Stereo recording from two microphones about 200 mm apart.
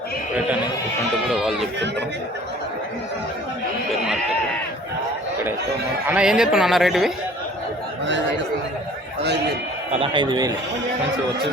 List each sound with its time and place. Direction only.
1.3 s sheep: centre (ahead or behind)
6.1 s speech: 5° right (ahead or behind)
9.9 s a man's voice: 25° right (ahead or behind)